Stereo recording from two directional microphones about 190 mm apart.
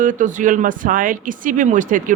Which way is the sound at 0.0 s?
40° right (ahead or behind).